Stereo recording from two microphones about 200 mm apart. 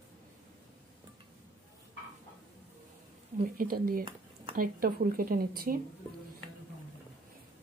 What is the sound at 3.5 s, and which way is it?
Speech, 45° right (ahead or behind).